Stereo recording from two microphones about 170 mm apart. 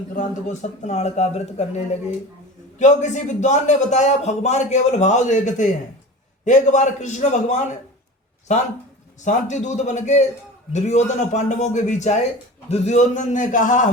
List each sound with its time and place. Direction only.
0.1 s a man's voice: 45° left (ahead or behind)